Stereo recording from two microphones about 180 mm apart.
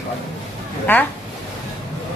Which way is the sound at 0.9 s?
10° left (ahead or behind).